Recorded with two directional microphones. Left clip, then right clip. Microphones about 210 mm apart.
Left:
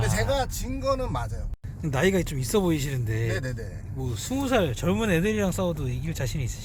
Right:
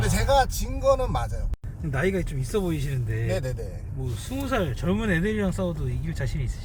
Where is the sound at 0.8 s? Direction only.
10° left (ahead or behind).